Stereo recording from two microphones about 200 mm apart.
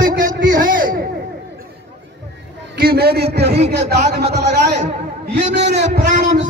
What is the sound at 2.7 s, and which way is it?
A man's voice, 50° right (ahead or behind).